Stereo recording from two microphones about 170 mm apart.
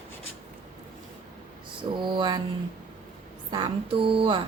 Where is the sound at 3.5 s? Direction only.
30° right (ahead or behind).